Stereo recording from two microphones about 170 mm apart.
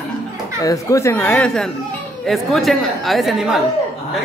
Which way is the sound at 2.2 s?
Centre (ahead or behind).